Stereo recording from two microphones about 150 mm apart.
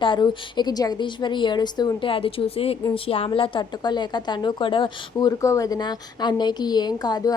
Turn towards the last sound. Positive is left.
turn(degrees=25)  # may be behind; listen again after turning